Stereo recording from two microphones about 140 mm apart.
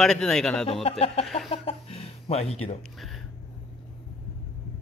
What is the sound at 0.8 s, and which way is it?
Speech, 45° left (ahead or behind).